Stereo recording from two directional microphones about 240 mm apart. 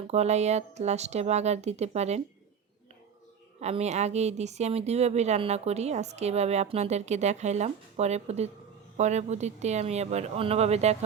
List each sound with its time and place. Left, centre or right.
0.1 s speech: right
3.6 s speech: right